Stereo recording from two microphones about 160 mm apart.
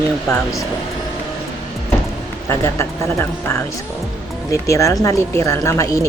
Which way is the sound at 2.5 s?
15° left (ahead or behind).